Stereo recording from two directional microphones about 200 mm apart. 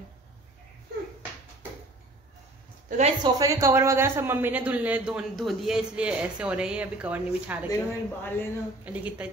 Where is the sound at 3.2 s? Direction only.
15° right (ahead or behind).